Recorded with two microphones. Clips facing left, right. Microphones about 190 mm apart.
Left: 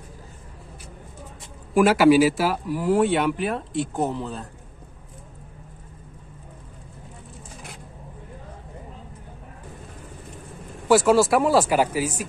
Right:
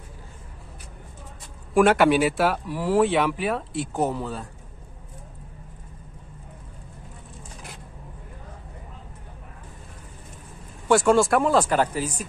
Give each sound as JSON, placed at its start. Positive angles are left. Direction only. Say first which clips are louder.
{"t": 1.7, "sound": "speech", "louder": "left 2 dB", "side_deg": 0}
{"t": 10.9, "sound": "speech", "louder": "left 1 dB", "side_deg": 5}